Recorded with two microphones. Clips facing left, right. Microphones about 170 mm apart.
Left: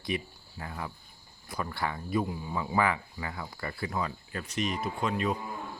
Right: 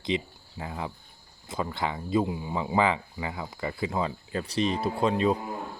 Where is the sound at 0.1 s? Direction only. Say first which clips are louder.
Right 5 dB; 20° right (ahead or behind).